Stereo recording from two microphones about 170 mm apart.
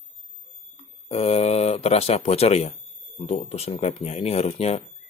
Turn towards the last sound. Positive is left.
turn(degrees=35)  # may be behind; listen again after turning